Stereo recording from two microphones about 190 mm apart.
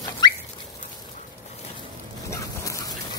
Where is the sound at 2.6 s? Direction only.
15° left (ahead or behind).